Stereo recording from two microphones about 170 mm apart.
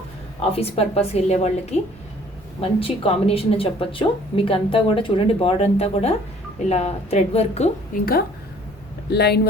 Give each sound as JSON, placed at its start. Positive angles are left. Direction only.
{"t": 0.5, "sound": "speech", "side_deg": 35}
{"t": 9.1, "sound": "speech", "side_deg": 70}